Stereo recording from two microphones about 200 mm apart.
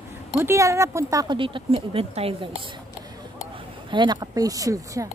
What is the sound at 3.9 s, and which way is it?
Speech, 20° right (ahead or behind).